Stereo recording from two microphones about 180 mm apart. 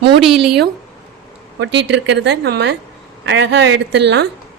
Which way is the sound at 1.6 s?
75° right (ahead or behind).